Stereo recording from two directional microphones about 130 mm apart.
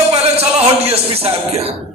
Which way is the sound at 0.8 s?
50° right (ahead or behind).